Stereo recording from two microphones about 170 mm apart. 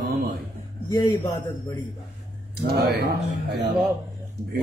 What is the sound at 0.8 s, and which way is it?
Speech, 25° left (ahead or behind).